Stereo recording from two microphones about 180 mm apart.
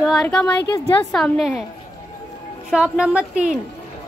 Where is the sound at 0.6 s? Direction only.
20° left (ahead or behind).